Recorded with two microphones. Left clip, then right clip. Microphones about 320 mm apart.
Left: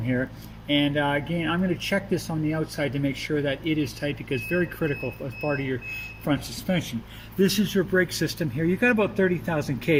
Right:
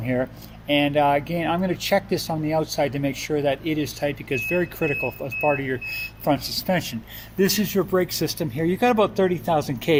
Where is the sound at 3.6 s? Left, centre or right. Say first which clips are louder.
Right 2 dB; right.